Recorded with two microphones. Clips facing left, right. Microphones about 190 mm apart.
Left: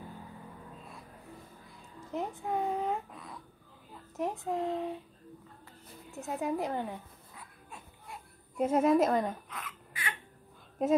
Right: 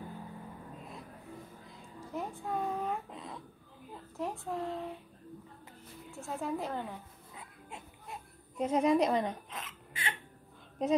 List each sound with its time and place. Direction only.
2.1 s a child's voice: 20° left (ahead or behind)
3.1 s babbling: 25° right (ahead or behind)
4.2 s speech: 20° left (ahead or behind)
6.1 s a woman's voice: 20° left (ahead or behind)
7.3 s baby cry: 20° right (ahead or behind)
8.5 s a woman's voice: 5° left (ahead or behind)
9.5 s hiccup: 25° right (ahead or behind)